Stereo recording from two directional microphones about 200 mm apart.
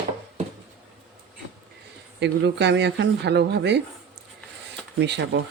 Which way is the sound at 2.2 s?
60° right (ahead or behind).